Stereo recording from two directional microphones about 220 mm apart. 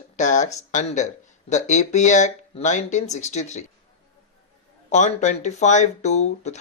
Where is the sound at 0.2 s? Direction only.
35° left (ahead or behind).